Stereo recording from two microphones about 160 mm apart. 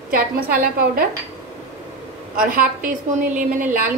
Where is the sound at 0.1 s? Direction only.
65° right (ahead or behind).